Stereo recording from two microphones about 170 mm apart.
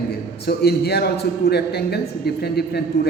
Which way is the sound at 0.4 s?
70° left (ahead or behind).